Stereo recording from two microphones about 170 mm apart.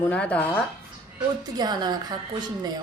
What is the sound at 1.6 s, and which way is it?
Speech, 25° right (ahead or behind).